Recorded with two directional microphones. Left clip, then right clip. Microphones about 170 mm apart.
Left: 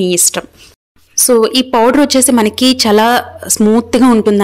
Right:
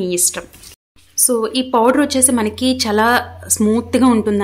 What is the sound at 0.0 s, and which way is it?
A woman's voice, 45° left (ahead or behind).